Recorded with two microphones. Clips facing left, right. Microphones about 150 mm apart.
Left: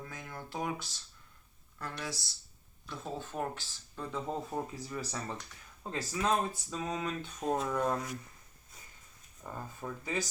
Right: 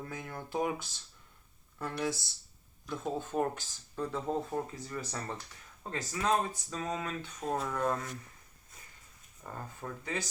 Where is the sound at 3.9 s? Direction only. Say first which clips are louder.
Right 3 dB; centre (ahead or behind).